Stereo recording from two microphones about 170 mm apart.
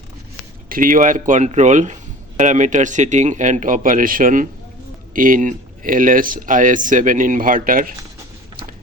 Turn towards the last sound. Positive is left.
turn(degrees=-55)  # may be behind; listen again after turning